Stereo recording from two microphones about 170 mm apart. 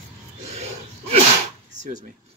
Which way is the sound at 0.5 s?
35° right (ahead or behind).